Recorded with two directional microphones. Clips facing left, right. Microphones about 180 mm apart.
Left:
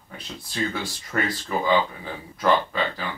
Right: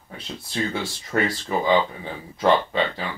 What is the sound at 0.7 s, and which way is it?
Speech, 25° right (ahead or behind).